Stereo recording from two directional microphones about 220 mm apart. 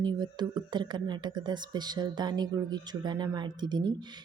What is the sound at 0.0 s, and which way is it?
A woman's voice, 20° right (ahead or behind).